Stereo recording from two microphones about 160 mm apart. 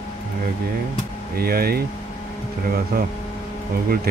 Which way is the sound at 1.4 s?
70° right (ahead or behind).